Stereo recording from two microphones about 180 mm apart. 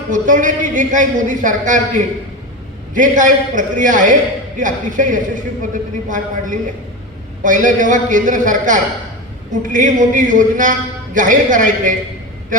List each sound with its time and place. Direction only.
0.1 s a man's voice: 45° right (ahead or behind)
2.9 s a man's voice: 45° right (ahead or behind)